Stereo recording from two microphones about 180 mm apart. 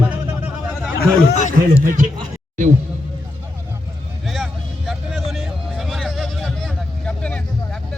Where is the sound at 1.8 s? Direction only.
45° right (ahead or behind).